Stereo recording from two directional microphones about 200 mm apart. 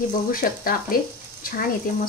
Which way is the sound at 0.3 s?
45° left (ahead or behind).